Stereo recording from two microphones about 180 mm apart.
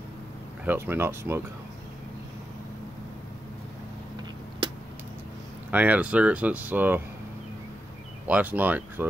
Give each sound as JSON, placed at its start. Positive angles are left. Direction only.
{"t": 0.7, "sound": "speech", "side_deg": -15}
{"t": 5.7, "sound": "speech", "side_deg": -10}
{"t": 8.3, "sound": "speech", "side_deg": -10}